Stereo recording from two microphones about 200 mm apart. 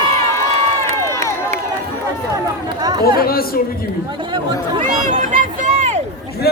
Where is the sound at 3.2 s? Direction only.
50° left (ahead or behind).